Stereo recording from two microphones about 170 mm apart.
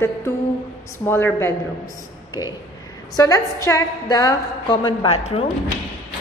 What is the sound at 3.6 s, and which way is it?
A woman's voice, 20° left (ahead or behind).